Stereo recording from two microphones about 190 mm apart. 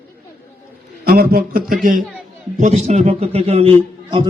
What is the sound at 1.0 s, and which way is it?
A man's voice, 50° right (ahead or behind).